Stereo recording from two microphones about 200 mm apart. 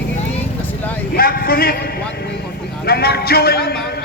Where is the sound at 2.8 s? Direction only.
55° left (ahead or behind).